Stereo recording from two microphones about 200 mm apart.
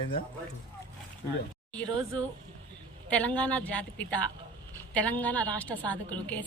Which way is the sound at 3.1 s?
5° left (ahead or behind).